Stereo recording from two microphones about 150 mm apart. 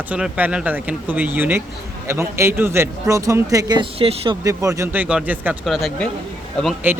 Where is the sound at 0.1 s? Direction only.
10° right (ahead or behind); by 3.8 s 25° right (ahead or behind).